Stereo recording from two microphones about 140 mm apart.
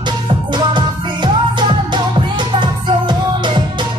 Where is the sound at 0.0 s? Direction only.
35° right (ahead or behind).